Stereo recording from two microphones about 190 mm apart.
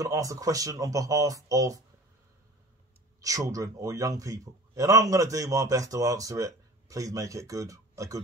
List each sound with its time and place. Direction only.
0.0 s a man's voice: 15° right (ahead or behind)
3.2 s a man's voice: 15° right (ahead or behind)